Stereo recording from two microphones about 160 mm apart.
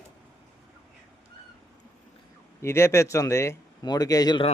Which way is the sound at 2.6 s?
15° left (ahead or behind).